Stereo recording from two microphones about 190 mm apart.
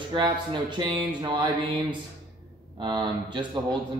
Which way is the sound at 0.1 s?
25° right (ahead or behind).